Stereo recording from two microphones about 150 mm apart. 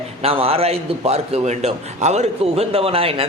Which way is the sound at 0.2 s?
40° right (ahead or behind).